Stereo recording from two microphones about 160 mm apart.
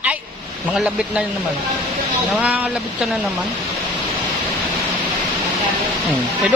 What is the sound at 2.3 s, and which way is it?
Speech, 10° right (ahead or behind).